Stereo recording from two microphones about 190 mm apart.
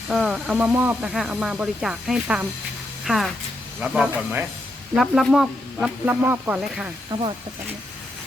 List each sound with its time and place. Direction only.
0.1 s speech: centre (ahead or behind)
7.1 s speech: 30° right (ahead or behind)